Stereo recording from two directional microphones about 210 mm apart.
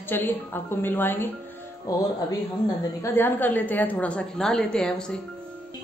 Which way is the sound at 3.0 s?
10° left (ahead or behind).